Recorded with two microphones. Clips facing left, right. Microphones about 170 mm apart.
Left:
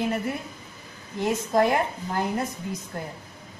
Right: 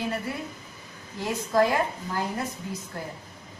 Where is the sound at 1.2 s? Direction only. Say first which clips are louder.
Left 1 dB; 20° left (ahead or behind).